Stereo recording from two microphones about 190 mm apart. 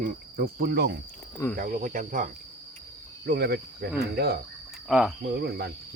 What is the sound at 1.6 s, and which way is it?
Cricket, 45° right (ahead or behind).